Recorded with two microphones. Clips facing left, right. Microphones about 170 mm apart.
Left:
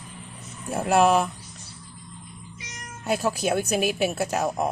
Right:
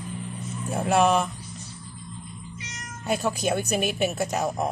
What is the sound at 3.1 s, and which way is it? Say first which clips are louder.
Speech: left 1 dB; 5° left (ahead or behind).